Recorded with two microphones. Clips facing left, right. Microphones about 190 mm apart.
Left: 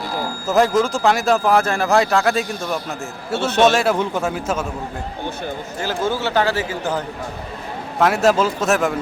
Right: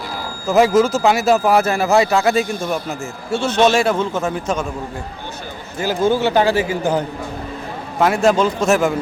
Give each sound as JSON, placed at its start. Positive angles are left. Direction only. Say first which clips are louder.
{"t": 0.1, "sound": "speech", "louder": "right 2 dB", "side_deg": 0}
{"t": 3.3, "sound": "speech", "louder": "right 1 dB", "side_deg": 60}
{"t": 3.7, "sound": "speech", "louder": "right 1 dB", "side_deg": 0}
{"t": 3.9, "sound": "a man's voice", "louder": "right 1 dB", "side_deg": 15}
{"t": 5.8, "sound": "speech", "louder": "right 6 dB", "side_deg": -15}
{"t": 7.9, "sound": "speech", "louder": "right 1 dB", "side_deg": 0}